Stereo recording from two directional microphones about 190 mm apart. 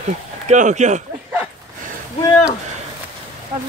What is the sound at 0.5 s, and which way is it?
Speech, 40° right (ahead or behind).